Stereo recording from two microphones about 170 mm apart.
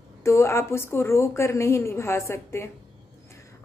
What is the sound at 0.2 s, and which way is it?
Speech, 15° left (ahead or behind).